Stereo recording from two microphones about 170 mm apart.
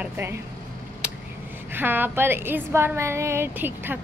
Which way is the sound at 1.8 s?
10° right (ahead or behind).